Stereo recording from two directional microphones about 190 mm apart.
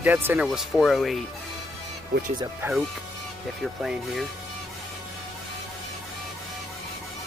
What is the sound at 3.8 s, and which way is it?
Speech, centre (ahead or behind).